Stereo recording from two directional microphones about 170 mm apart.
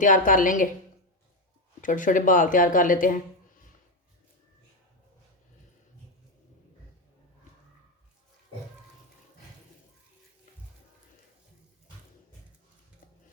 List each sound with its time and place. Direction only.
0.0 s speech: 50° left (ahead or behind)
1.8 s speech: 50° left (ahead or behind)